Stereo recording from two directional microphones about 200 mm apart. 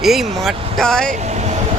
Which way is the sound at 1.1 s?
35° right (ahead or behind).